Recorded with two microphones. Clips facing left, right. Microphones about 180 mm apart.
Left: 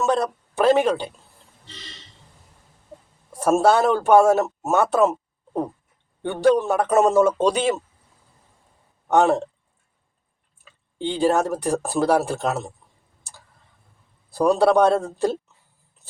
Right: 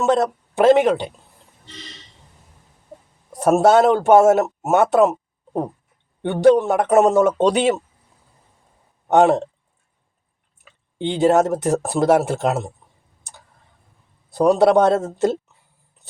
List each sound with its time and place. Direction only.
0.0 s a man's voice: 20° right (ahead or behind)
3.6 s a man's voice: 20° right (ahead or behind)
6.2 s a man's voice: 20° right (ahead or behind)
7.5 s speech: 70° right (ahead or behind)
9.0 s a man's voice: 20° right (ahead or behind)
10.6 s a man's voice: 20° right (ahead or behind)
14.3 s a man's voice: 20° right (ahead or behind)